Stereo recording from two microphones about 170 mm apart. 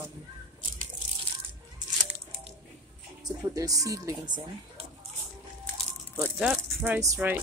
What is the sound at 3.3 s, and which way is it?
Speech, 20° right (ahead or behind).